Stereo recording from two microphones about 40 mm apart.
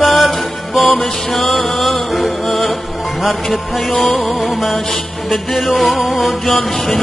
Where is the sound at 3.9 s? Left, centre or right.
Centre.